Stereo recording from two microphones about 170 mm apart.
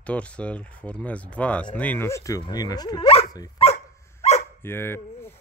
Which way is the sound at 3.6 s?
35° left (ahead or behind).